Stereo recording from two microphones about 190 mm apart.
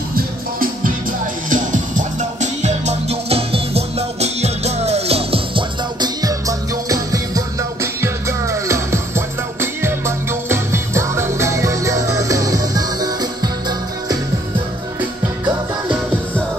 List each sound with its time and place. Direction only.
0.1 s music: 50° right (ahead or behind); by 14.1 s 20° right (ahead or behind)